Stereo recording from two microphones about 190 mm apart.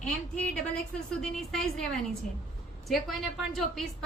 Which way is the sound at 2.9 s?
Centre (ahead or behind).